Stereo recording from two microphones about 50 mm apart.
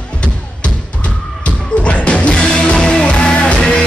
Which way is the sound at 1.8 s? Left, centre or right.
Left.